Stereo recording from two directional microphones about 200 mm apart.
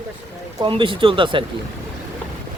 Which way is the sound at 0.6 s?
25° right (ahead or behind).